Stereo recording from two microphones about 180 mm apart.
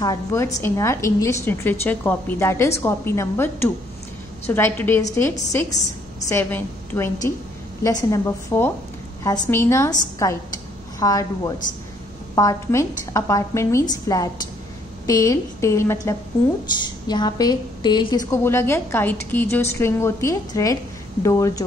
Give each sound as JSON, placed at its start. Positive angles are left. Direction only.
{"t": 0.0, "sound": "a woman's voice", "side_deg": 20}